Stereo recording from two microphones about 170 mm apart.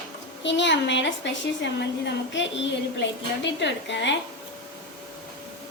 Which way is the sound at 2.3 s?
90° left.